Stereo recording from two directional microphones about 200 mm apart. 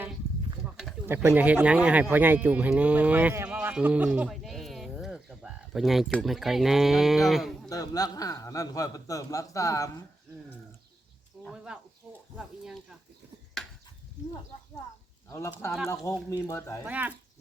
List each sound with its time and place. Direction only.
0.6 s speech: 5° right (ahead or behind)
7.7 s a man's voice: 20° left (ahead or behind)
11.4 s speech: 5° right (ahead or behind)
15.3 s a man's voice: 15° left (ahead or behind)
16.8 s speech: 5° right (ahead or behind)